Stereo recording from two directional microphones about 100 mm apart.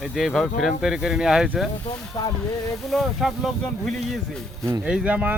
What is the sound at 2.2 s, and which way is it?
Speech, 40° left (ahead or behind).